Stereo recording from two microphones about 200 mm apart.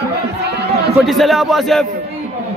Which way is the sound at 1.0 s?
Centre (ahead or behind).